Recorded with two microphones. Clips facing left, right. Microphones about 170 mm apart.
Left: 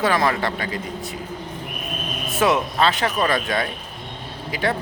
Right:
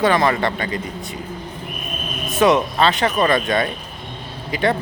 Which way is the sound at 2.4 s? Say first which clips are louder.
Right 4 dB; 5° left (ahead or behind).